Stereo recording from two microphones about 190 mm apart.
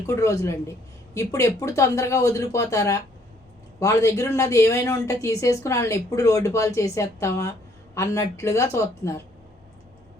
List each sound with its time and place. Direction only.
0.1 s a woman's voice: 15° left (ahead or behind)